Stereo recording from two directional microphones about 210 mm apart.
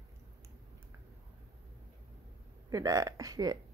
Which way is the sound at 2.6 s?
15° right (ahead or behind).